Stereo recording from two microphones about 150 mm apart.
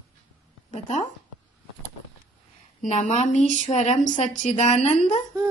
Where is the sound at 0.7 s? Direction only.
50° left (ahead or behind).